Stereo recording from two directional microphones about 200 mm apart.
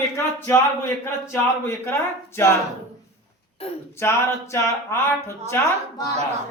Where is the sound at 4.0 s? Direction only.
15° left (ahead or behind).